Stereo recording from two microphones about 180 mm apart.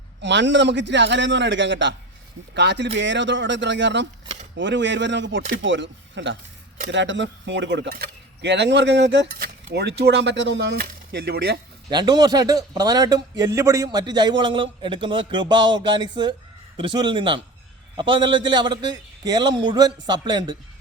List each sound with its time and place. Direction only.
0.2 s a man's voice: 85° right
2.6 s a man's voice: 75° right (ahead or behind)
11.9 s a man's voice: 25° right (ahead or behind)